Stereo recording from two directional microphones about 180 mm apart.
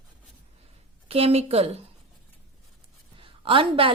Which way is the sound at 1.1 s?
30° right (ahead or behind).